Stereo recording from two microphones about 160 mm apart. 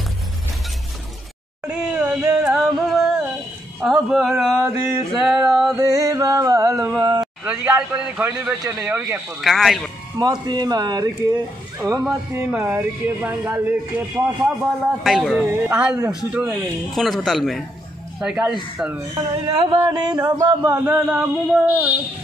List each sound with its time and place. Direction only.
1.7 s a sound: 5° right (ahead or behind)
3.8 s speech: centre (ahead or behind)
5.8 s music: 20° right (ahead or behind)
7.2 s speech: 10° right (ahead or behind)
10.1 s music: 25° right (ahead or behind)
11.8 s speech: 20° right (ahead or behind)
19.1 s speech: 35° right (ahead or behind)
19.8 s music: 25° right (ahead or behind)
20.6 s speech: 15° right (ahead or behind)